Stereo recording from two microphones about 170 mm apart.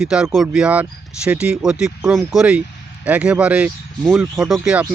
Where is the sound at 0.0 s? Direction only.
5° right (ahead or behind).